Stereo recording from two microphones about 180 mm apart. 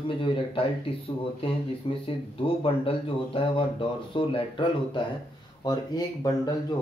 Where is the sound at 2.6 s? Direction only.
30° left (ahead or behind).